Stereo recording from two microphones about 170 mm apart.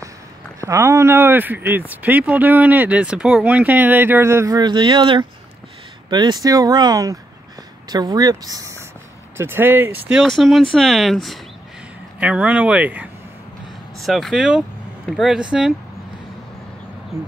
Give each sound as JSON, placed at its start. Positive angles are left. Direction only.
{"t": 0.6, "sound": "speech", "side_deg": -15}
{"t": 10.2, "sound": "speech", "side_deg": 0}